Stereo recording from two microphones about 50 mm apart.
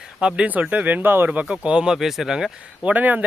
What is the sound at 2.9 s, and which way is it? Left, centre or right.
Speech, right.